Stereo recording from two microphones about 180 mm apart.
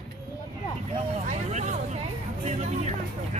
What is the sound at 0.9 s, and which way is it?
Vehicle, 40° right (ahead or behind).